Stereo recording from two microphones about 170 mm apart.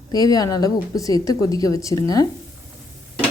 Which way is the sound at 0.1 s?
20° left (ahead or behind).